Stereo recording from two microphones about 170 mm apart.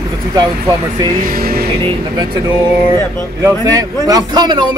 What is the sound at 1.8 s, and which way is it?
A man's voice, 25° right (ahead or behind).